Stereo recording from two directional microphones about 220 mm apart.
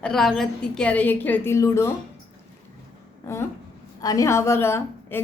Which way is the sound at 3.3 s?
15° left (ahead or behind).